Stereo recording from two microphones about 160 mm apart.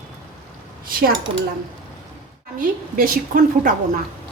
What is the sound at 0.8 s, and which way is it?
Speech, 65° right (ahead or behind).